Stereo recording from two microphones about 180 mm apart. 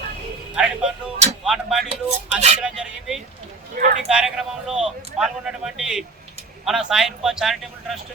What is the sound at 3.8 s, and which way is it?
Speech, 50° right (ahead or behind).